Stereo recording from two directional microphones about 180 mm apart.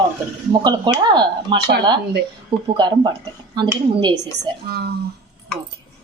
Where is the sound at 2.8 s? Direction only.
25° right (ahead or behind).